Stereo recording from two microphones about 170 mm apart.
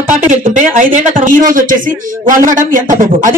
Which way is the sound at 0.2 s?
50° right (ahead or behind).